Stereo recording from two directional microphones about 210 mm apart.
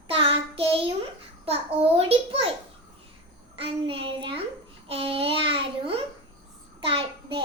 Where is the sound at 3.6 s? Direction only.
25° right (ahead or behind).